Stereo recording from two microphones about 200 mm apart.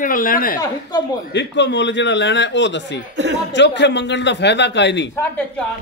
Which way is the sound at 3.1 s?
65° right (ahead or behind).